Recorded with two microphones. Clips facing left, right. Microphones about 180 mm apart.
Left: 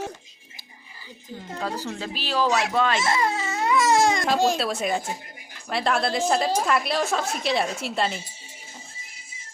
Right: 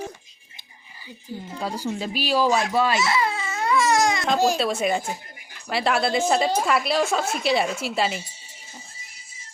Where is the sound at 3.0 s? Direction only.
45° left (ahead or behind).